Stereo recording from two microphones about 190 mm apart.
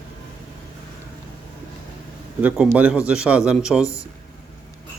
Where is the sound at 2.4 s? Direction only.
10° right (ahead or behind).